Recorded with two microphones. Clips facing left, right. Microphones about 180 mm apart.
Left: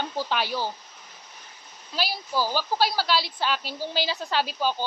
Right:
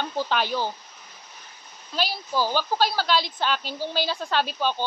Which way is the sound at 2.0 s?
10° left (ahead or behind).